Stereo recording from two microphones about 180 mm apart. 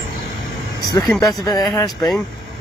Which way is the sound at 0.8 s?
20° left (ahead or behind).